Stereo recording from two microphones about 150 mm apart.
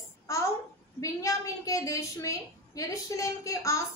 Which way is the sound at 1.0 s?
20° left (ahead or behind).